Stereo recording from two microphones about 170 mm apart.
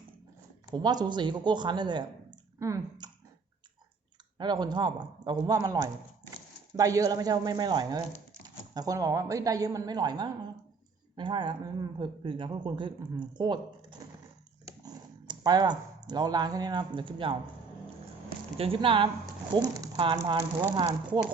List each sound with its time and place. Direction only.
0.7 s speech: 25° right (ahead or behind)
4.4 s speech: 25° right (ahead or behind)
14.8 s speech: 25° right (ahead or behind)
18.5 s speech: 35° right (ahead or behind)